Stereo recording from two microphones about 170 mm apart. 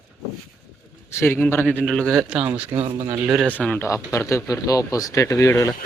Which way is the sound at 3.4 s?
10° left (ahead or behind).